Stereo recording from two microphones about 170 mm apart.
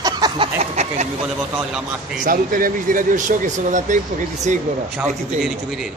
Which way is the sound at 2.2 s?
55° right (ahead or behind).